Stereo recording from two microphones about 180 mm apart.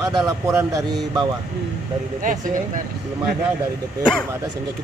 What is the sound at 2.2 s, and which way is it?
Speech, 45° right (ahead or behind).